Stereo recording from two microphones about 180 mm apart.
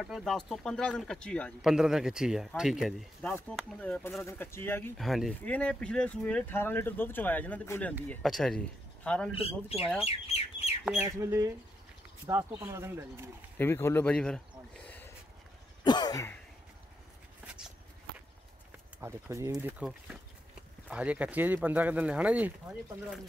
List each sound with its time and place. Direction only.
0.0 s speech: centre (ahead or behind)
4.9 s speech: centre (ahead or behind)
8.1 s speech: centre (ahead or behind)
10.0 s speech: 35° left (ahead or behind)
11.0 s speech: 15° right (ahead or behind)
13.6 s speech: 15° left (ahead or behind)
15.8 s throat clearing: 25° left (ahead or behind)
18.9 s speech: 15° right (ahead or behind)
19.8 s speech: 5° right (ahead or behind)